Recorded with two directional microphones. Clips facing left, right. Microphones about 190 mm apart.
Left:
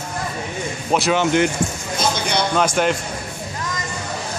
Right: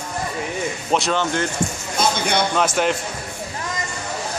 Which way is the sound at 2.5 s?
Centre (ahead or behind).